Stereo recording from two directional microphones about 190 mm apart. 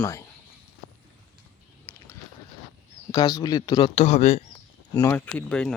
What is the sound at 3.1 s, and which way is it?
Speech, 15° left (ahead or behind).